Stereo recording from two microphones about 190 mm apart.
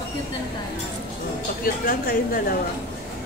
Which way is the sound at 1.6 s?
50° left (ahead or behind).